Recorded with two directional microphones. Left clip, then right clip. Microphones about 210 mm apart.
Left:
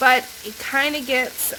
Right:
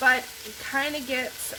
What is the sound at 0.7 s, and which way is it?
Stir, 50° left (ahead or behind).